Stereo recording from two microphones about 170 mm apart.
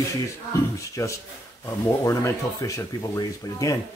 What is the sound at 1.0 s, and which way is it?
Speech, 20° left (ahead or behind).